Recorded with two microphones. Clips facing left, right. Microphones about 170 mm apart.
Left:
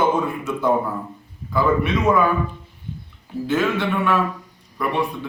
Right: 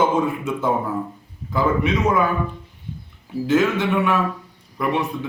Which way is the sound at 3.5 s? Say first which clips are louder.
Right 3 dB; 20° right (ahead or behind).